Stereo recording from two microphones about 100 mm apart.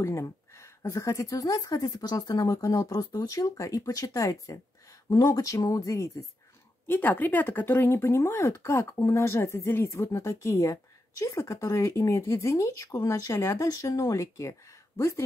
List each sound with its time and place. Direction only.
0.0 s speech: 30° left (ahead or behind)
6.9 s speech: 20° left (ahead or behind)